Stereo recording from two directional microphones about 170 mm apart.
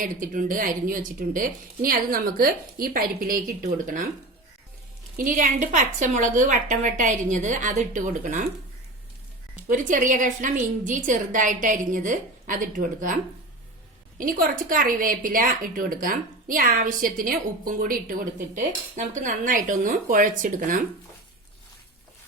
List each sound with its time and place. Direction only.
0.0 s a woman's voice: 55° right (ahead or behind)
5.1 s a woman's voice: 50° right (ahead or behind)
9.6 s a woman's voice: 50° right (ahead or behind)
14.2 s a woman's voice: 55° right (ahead or behind)